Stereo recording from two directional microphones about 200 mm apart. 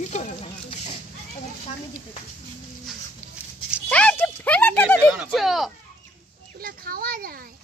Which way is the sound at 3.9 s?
5° left (ahead or behind).